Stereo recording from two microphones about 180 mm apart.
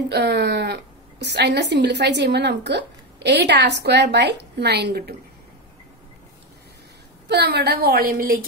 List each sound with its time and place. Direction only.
0.1 s a woman's voice: 65° right (ahead or behind)
7.2 s a woman's voice: 65° right (ahead or behind)